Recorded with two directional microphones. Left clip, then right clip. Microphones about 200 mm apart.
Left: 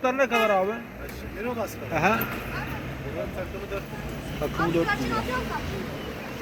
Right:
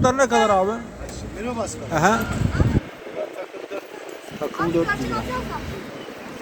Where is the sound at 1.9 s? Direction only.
45° right (ahead or behind).